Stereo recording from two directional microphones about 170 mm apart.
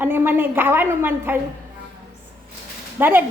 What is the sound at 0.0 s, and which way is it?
A woman's voice, 10° right (ahead or behind).